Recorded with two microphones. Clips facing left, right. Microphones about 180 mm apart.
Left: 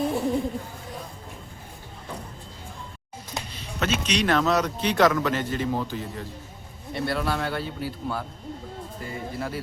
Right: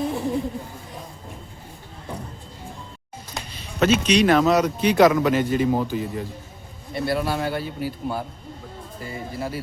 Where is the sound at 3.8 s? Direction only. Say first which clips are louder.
Right 8 dB; 10° right (ahead or behind).